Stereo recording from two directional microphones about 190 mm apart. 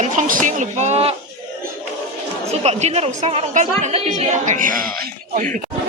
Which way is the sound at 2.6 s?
35° right (ahead or behind).